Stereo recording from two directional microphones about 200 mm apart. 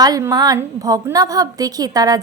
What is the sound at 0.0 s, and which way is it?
A woman's voice, 15° right (ahead or behind).